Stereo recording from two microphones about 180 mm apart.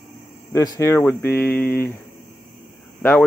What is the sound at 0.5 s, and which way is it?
Speech, 20° left (ahead or behind).